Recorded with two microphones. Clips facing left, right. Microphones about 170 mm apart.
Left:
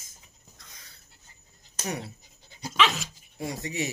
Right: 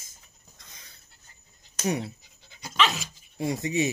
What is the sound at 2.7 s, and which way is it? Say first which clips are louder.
Dog: left 1 dB; centre (ahead or behind).